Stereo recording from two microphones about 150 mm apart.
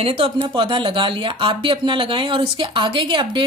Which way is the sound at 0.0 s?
40° right (ahead or behind).